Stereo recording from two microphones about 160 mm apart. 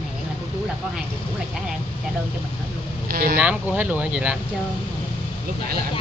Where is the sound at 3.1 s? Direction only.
70° right (ahead or behind).